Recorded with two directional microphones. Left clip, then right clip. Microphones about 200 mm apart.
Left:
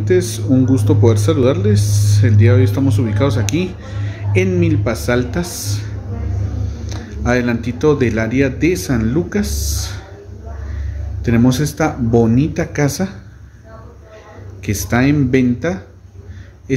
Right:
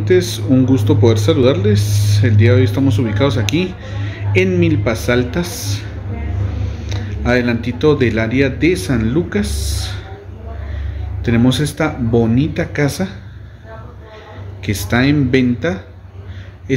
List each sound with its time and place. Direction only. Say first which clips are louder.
0.0 s speech: right 2 dB; centre (ahead or behind)
11.2 s speech: even; 10° left (ahead or behind)
14.6 s speech: even; 10° left (ahead or behind)